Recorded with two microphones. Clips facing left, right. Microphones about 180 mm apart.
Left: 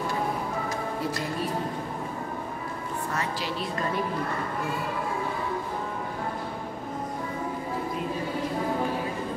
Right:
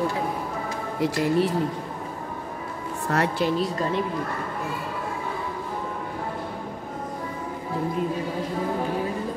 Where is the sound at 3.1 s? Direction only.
70° right (ahead or behind).